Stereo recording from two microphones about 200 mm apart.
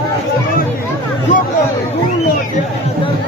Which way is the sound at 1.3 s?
40° left (ahead or behind).